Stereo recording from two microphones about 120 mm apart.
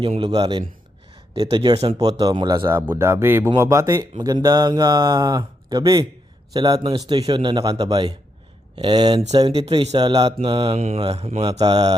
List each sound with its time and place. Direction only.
0.2 s a man's voice: 35° right (ahead or behind)
1.7 s speech: 60° right (ahead or behind)
2.0 s a man's voice: 35° right (ahead or behind)
2.6 s a man's voice: 20° right (ahead or behind); by 9.5 s 35° right (ahead or behind)
9.5 s a man's voice: 50° right (ahead or behind)
10.4 s mantra: 45° right (ahead or behind)
10.8 s speech: 60° right (ahead or behind)
11.6 s a man's voice: 35° right (ahead or behind)